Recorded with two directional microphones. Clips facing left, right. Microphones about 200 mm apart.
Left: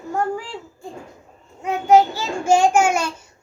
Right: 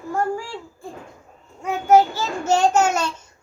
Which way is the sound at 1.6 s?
15° left (ahead or behind).